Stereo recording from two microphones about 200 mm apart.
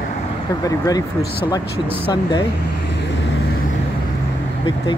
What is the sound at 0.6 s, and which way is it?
Speech, 15° left (ahead or behind).